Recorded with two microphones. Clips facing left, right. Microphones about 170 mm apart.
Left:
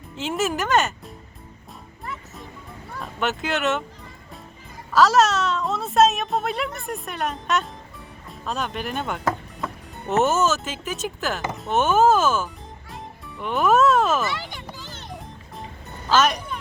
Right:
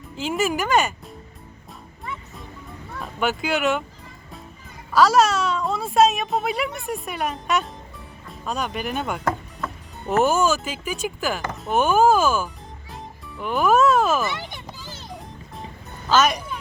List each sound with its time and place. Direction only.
0.2 s a child's voice: centre (ahead or behind)
2.9 s speech: 5° right (ahead or behind)
4.9 s a child's voice: centre (ahead or behind)
14.3 s music: 20° right (ahead or behind)
14.9 s music: centre (ahead or behind)
16.0 s speech: centre (ahead or behind)